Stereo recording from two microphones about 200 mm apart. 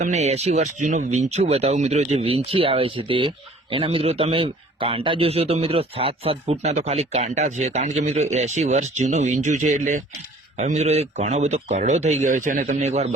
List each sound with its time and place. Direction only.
0.0 s speech: 35° right (ahead or behind)